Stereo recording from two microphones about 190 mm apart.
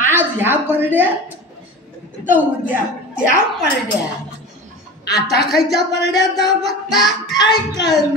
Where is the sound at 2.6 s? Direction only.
5° right (ahead or behind).